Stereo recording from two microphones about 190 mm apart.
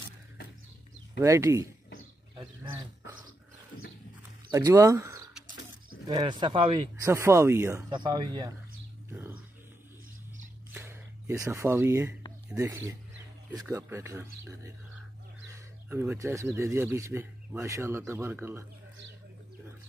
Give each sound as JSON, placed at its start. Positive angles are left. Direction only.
{"t": 1.2, "sound": "speech", "side_deg": -15}
{"t": 4.5, "sound": "speech", "side_deg": -15}
{"t": 7.1, "sound": "speech", "side_deg": -15}
{"t": 10.7, "sound": "a sound", "side_deg": -15}
{"t": 12.4, "sound": "speech", "side_deg": -15}